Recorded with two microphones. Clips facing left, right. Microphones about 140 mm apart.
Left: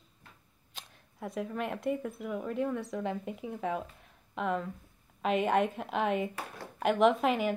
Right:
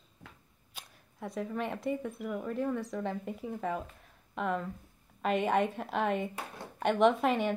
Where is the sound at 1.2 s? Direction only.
Centre (ahead or behind).